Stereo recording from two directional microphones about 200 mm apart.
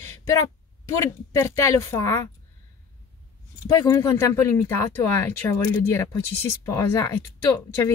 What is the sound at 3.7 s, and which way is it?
Speech, 15° left (ahead or behind).